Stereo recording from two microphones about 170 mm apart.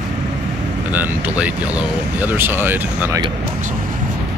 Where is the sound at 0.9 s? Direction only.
10° right (ahead or behind).